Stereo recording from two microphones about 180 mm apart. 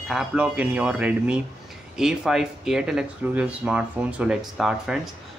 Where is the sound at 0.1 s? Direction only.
5° right (ahead or behind).